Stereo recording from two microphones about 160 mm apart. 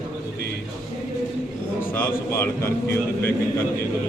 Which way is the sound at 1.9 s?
15° left (ahead or behind).